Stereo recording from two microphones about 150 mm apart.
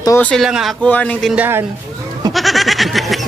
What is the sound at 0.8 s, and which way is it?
Speech, 10° left (ahead or behind).